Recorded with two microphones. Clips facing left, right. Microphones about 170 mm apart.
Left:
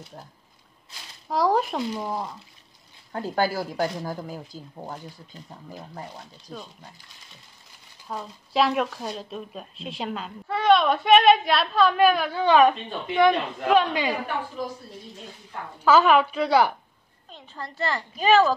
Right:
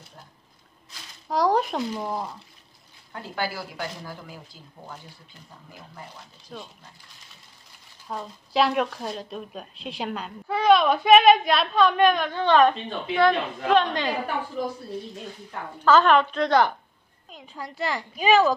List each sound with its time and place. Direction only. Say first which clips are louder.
1.3 s speech: even; centre (ahead or behind)
3.1 s speech: left 6 dB; 40° left (ahead or behind)
8.1 s a woman's voice: right 1 dB; centre (ahead or behind)
15.8 s a woman's voice: even; 10° left (ahead or behind)
17.3 s a woman's voice: even; 10° right (ahead or behind)